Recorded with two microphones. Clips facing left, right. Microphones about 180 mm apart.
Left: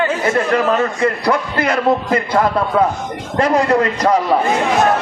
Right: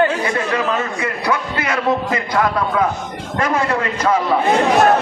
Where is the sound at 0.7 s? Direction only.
35° left (ahead or behind).